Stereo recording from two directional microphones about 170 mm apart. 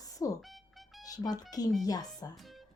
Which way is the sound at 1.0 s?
20° left (ahead or behind).